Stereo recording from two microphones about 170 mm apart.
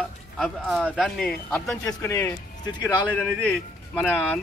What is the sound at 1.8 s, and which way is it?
A man's voice, 15° left (ahead or behind).